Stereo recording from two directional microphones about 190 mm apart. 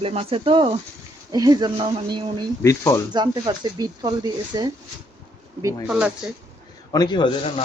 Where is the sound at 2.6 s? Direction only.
15° left (ahead or behind).